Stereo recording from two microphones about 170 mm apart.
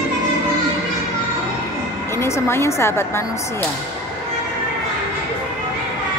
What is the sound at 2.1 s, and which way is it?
A woman's voice, 15° left (ahead or behind).